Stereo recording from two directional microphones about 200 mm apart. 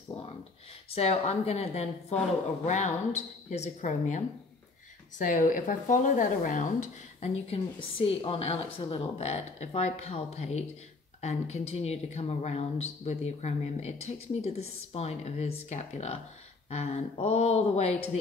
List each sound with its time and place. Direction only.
0.1 s a sound: 30° left (ahead or behind)
0.8 s speech: 30° left (ahead or behind)
5.2 s speech: 40° left (ahead or behind)